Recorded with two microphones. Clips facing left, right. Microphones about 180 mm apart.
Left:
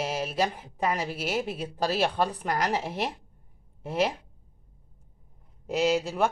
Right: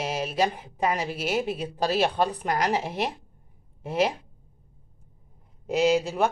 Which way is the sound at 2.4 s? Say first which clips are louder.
Right 2 dB; 20° right (ahead or behind).